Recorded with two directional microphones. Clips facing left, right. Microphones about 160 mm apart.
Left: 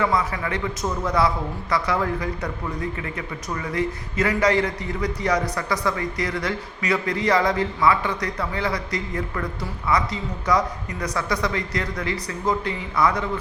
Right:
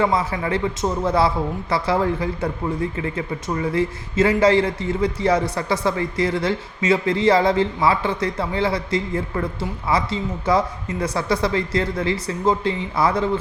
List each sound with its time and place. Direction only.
0.0 s a man's voice: 30° right (ahead or behind)